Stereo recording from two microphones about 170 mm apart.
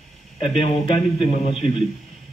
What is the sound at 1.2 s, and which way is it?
Speech, 35° left (ahead or behind).